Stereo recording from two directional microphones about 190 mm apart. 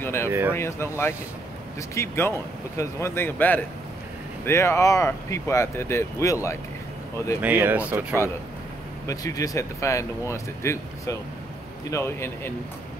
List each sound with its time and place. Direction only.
0.0 s speech: 10° left (ahead or behind)
7.4 s speech: 10° right (ahead or behind)
9.0 s speech: 20° left (ahead or behind)